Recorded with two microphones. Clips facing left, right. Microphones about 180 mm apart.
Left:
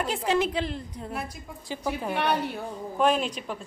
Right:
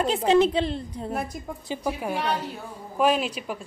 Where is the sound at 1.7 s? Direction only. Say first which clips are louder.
Right 1 dB; 10° right (ahead or behind).